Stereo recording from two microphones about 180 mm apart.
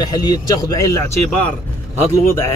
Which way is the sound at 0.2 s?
20° left (ahead or behind).